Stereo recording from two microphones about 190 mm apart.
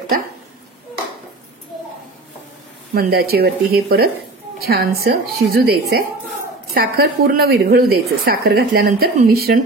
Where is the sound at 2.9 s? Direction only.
55° right (ahead or behind).